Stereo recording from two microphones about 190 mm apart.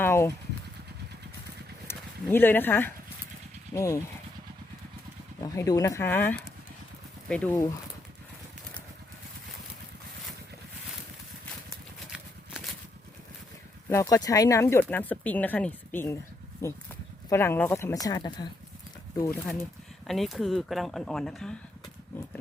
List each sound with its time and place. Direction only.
0.0 s vehicle: 15° left (ahead or behind)
1.9 s speech: 10° left (ahead or behind)
5.4 s speech: 20° left (ahead or behind)
11.7 s horse: 5° right (ahead or behind)
13.9 s speech: 15° left (ahead or behind)
17.2 s speech: 10° left (ahead or behind)
20.1 s speech: centre (ahead or behind)